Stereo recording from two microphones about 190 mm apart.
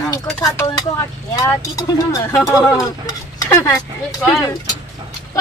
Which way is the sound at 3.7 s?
Centre (ahead or behind).